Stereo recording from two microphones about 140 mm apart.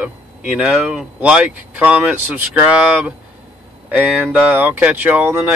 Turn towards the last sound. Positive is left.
turn(degrees=-15)  # may be behind; listen again after turning